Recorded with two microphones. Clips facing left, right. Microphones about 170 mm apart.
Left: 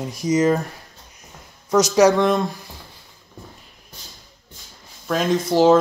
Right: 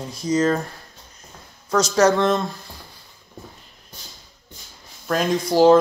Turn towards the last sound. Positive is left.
turn(degrees=5)  # may be behind; listen again after turning